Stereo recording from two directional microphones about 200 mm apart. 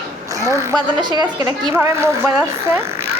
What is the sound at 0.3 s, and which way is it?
A woman's voice, 15° right (ahead or behind).